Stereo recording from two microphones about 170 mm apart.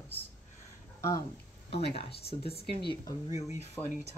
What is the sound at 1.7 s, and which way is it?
Speech, 35° left (ahead or behind).